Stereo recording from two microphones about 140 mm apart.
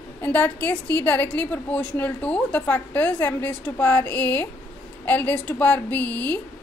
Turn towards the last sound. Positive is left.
turn(degrees=15)  # may be behind; listen again after turning